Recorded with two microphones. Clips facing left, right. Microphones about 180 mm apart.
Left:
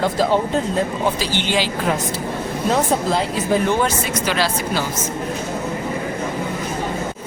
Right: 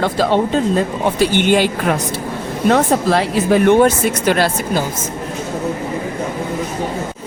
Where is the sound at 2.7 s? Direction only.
70° right (ahead or behind); by 4.8 s 50° right (ahead or behind).